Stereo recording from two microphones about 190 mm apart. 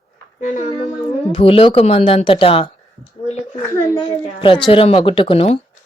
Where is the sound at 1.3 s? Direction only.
30° left (ahead or behind).